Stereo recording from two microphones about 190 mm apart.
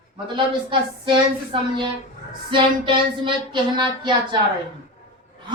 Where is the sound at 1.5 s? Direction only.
25° right (ahead or behind).